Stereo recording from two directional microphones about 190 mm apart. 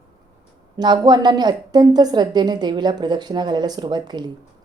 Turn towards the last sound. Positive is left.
turn(degrees=-25)  # may be behind; listen again after turning